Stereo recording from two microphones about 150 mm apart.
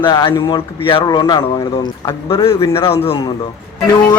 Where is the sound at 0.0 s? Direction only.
30° left (ahead or behind).